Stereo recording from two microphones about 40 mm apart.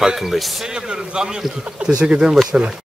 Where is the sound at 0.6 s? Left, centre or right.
Right.